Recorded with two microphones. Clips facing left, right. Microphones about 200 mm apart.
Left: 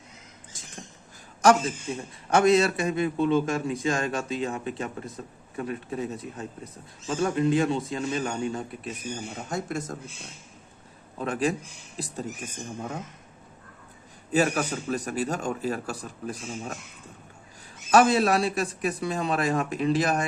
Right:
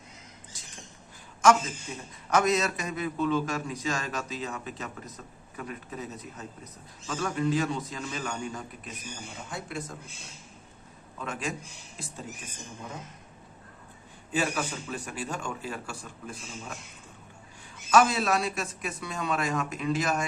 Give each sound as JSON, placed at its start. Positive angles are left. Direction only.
{"t": 0.5, "sound": "rodents", "side_deg": 50}
{"t": 1.4, "sound": "a man's voice", "side_deg": 35}
{"t": 9.5, "sound": "speech", "side_deg": 45}
{"t": 11.2, "sound": "a man's voice", "side_deg": 35}
{"t": 14.3, "sound": "a man's voice", "side_deg": 40}
{"t": 17.9, "sound": "a man's voice", "side_deg": 35}